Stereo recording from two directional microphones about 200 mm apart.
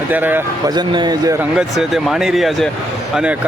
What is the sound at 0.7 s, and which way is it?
Speech, 20° right (ahead or behind).